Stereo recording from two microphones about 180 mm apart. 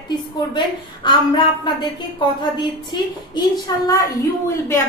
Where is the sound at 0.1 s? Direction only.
25° left (ahead or behind).